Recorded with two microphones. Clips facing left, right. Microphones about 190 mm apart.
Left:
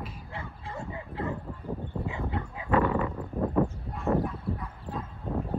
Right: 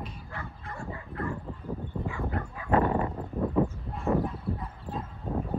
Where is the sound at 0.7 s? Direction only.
20° left (ahead or behind).